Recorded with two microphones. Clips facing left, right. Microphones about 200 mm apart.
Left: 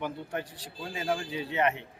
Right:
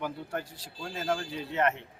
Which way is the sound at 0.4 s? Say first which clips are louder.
Left 2 dB; 25° right (ahead or behind).